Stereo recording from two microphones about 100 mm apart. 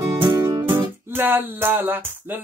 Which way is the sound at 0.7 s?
20° right (ahead or behind).